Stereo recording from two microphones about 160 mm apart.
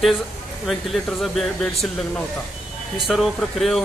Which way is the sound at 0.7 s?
Centre (ahead or behind).